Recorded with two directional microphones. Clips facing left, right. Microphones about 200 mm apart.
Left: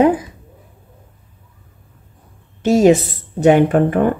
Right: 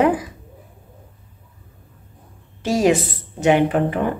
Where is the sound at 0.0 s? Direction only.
25° left (ahead or behind).